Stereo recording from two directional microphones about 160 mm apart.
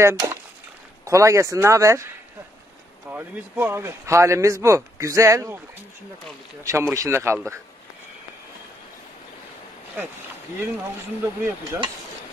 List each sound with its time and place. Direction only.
0.0 s speech: 20° right (ahead or behind)
3.1 s speech: 10° right (ahead or behind)
6.6 s speech: 20° right (ahead or behind)
11.2 s speech: 15° right (ahead or behind)